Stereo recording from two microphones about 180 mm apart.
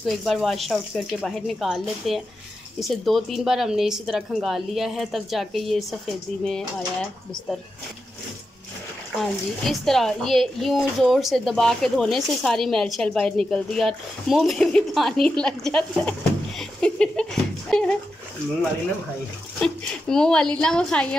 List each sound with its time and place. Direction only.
0.0 s speech: centre (ahead or behind)
9.2 s speech: centre (ahead or behind)
19.6 s speech: 5° left (ahead or behind)